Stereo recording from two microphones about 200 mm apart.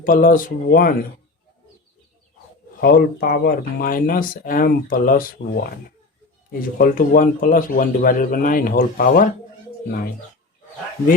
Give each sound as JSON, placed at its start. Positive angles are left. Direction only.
{"t": 0.0, "sound": "speech", "side_deg": 40}
{"t": 2.8, "sound": "speech", "side_deg": 50}